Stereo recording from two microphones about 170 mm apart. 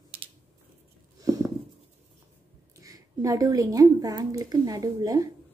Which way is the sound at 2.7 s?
20° right (ahead or behind).